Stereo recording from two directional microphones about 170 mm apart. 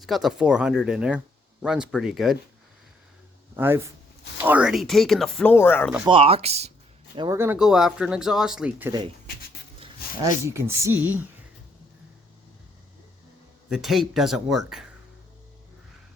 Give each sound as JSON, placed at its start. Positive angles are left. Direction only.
{"t": 0.0, "sound": "speech", "side_deg": 0}
{"t": 3.5, "sound": "speech", "side_deg": -15}
{"t": 6.1, "sound": "speech", "side_deg": -35}
{"t": 7.2, "sound": "a woman's voice", "side_deg": -15}
{"t": 7.6, "sound": "speech", "side_deg": -5}
{"t": 10.0, "sound": "a sound", "side_deg": 65}
{"t": 10.4, "sound": "a woman's voice", "side_deg": -15}
{"t": 13.7, "sound": "speech", "side_deg": 0}